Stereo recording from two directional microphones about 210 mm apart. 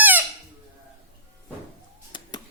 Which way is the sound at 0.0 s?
10° right (ahead or behind).